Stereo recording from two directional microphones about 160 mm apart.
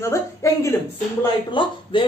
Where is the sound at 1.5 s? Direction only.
30° left (ahead or behind).